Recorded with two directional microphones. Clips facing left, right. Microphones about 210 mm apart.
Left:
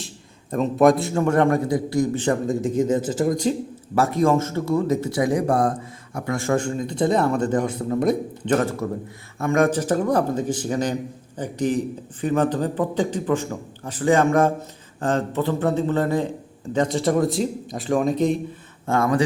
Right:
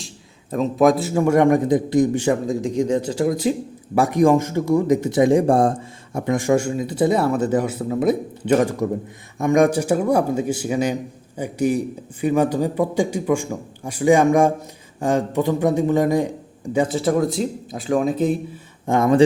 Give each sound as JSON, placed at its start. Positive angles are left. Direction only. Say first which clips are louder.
{"t": 0.5, "sound": "speech", "louder": "even", "side_deg": 0}
{"t": 2.2, "sound": "speech", "louder": "right 1 dB", "side_deg": 0}
{"t": 3.9, "sound": "speech", "louder": "right 3 dB", "side_deg": -15}
{"t": 18.9, "sound": "speech", "louder": "right 4 dB", "side_deg": -20}